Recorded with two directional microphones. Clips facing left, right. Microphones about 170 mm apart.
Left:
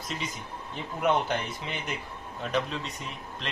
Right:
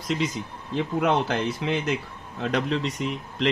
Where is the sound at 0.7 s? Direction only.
90° right.